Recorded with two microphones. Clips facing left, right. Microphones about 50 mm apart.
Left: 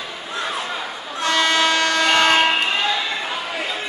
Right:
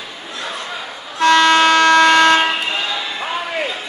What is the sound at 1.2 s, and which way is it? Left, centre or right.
Music, right.